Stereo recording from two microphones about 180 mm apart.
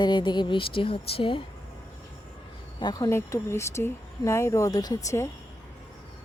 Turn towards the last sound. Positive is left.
turn(degrees=15)  # may be behind; listen again after turning